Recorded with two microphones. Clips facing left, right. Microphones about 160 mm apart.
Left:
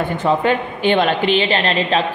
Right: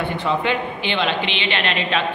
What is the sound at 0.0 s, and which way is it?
A woman's voice, 45° left (ahead or behind).